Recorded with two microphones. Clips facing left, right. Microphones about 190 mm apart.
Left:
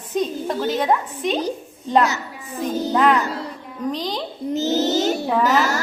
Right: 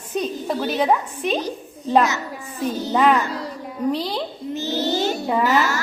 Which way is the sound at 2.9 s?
15° right (ahead or behind).